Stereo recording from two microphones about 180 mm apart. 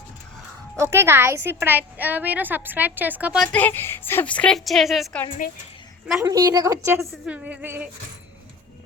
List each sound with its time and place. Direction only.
0.8 s a woman's voice: 15° right (ahead or behind)
5.4 s a woman's voice: 55° left (ahead or behind)
6.2 s speech: 20° right (ahead or behind)